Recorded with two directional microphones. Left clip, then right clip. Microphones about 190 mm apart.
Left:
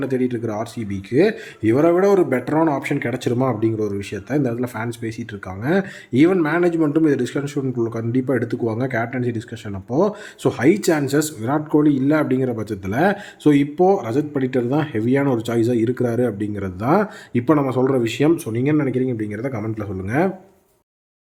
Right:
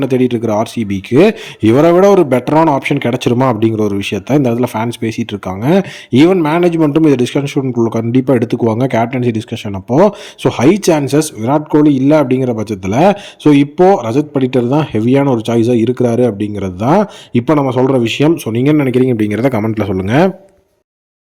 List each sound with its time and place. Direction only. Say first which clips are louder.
0.0 s a man's voice: right 9 dB; 35° right (ahead or behind)